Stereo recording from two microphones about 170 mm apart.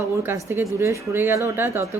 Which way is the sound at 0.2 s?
15° right (ahead or behind).